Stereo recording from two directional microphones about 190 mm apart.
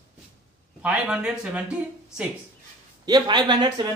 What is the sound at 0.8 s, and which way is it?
Speech, 5° right (ahead or behind).